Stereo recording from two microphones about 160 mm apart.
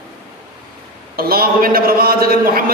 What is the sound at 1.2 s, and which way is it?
A man's voice, 70° right (ahead or behind).